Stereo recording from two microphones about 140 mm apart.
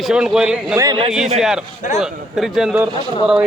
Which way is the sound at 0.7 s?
25° right (ahead or behind).